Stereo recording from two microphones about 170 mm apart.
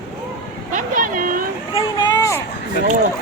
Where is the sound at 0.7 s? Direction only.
55° right (ahead or behind).